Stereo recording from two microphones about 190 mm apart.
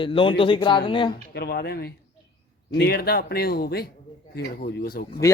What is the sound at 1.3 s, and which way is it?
A man's voice, 60° left (ahead or behind).